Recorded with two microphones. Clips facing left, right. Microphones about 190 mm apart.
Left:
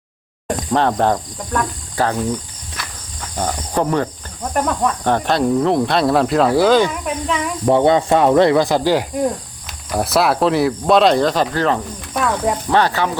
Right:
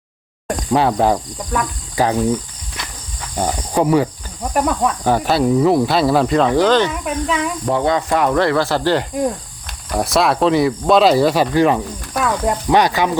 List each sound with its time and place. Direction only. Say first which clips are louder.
0.4 s speech: right 1 dB; 5° right (ahead or behind)
3.3 s cricket: right 2 dB; 10° right (ahead or behind)
4.5 s speech: right 1 dB; 5° right (ahead or behind)
7.0 s speech: right 1 dB; centre (ahead or behind)
7.7 s speech: left 5 dB; 25° left (ahead or behind)
9.9 s speech: even; centre (ahead or behind)
12.1 s speech: even; centre (ahead or behind)
12.7 s cricket: right 2 dB; 15° right (ahead or behind)